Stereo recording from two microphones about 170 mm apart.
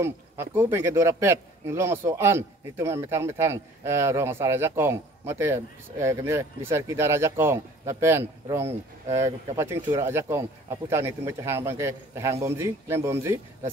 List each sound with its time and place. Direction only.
0.0 s a man's voice: 15° right (ahead or behind)